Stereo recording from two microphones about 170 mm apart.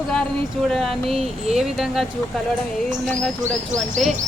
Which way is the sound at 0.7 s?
Centre (ahead or behind).